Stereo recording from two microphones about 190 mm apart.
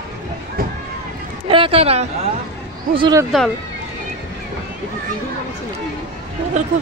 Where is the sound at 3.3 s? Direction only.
Centre (ahead or behind).